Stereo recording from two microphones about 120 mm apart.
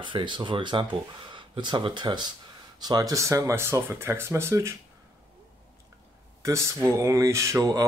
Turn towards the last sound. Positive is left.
turn(degrees=-25)  # may be behind; listen again after turning